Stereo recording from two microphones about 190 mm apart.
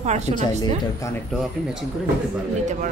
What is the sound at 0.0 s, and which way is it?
Speech, 35° right (ahead or behind).